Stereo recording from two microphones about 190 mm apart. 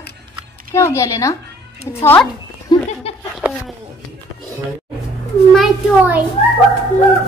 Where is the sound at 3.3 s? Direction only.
Centre (ahead or behind).